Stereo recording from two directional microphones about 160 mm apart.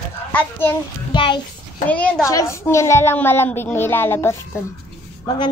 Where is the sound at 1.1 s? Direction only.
30° left (ahead or behind).